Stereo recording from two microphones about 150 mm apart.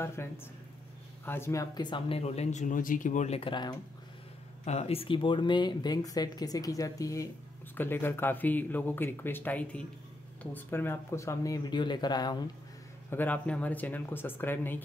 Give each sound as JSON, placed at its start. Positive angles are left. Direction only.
{"t": 0.0, "sound": "speech", "side_deg": 15}
{"t": 3.3, "sound": "speech", "side_deg": 30}
{"t": 4.6, "sound": "speech", "side_deg": 45}
{"t": 13.1, "sound": "speech", "side_deg": 10}